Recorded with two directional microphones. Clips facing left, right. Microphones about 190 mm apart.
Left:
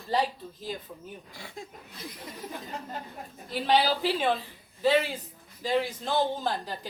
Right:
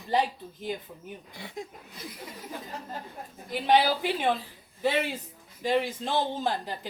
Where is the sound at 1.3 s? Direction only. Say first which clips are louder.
Right 6 dB; 20° right (ahead or behind).